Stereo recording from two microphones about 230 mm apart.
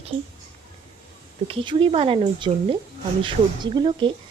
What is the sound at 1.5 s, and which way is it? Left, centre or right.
A woman's voice, right.